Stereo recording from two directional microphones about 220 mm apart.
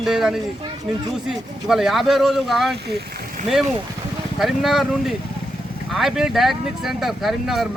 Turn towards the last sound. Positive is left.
turn(degrees=0)  # may be behind; listen again after turning